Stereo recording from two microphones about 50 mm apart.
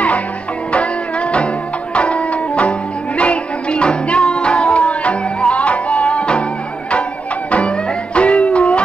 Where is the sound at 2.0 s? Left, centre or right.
Left.